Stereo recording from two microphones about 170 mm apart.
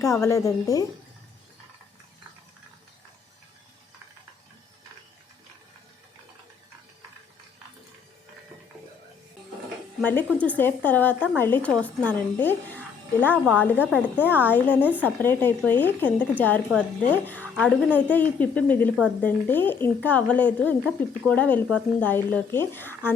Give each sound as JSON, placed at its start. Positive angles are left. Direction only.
{"t": 0.0, "sound": "a woman's voice", "side_deg": 15}
{"t": 10.0, "sound": "a woman's voice", "side_deg": 10}
{"t": 14.8, "sound": "speech", "side_deg": -10}
{"t": 15.0, "sound": "a woman's voice", "side_deg": 10}